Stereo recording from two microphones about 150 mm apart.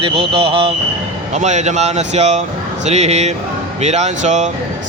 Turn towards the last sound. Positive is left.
turn(degrees=-50)  # may be behind; listen again after turning